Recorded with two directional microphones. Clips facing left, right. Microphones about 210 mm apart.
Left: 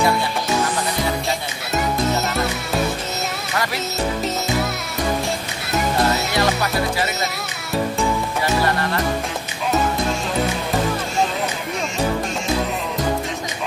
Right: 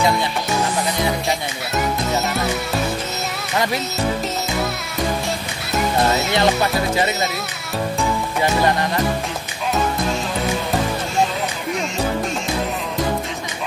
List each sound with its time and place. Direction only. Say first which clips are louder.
6.3 s music: right 2 dB; 25° right (ahead or behind)